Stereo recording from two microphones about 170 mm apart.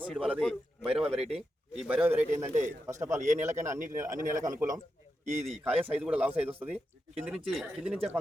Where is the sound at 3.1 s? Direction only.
45° right (ahead or behind).